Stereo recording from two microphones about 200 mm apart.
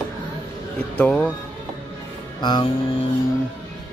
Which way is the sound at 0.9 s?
5° left (ahead or behind).